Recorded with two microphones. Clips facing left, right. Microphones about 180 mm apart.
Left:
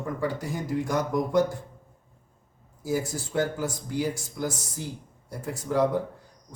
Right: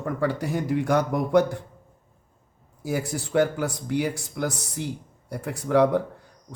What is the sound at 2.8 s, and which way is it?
A man's voice, 65° right (ahead or behind).